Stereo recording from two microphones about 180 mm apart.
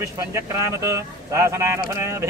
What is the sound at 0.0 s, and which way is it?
Speech, 15° right (ahead or behind).